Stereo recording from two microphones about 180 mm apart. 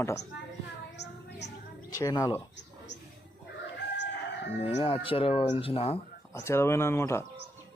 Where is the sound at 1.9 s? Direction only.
20° left (ahead or behind).